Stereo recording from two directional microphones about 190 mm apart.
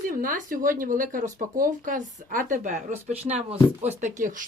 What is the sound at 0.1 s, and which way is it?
Speech, 45° right (ahead or behind).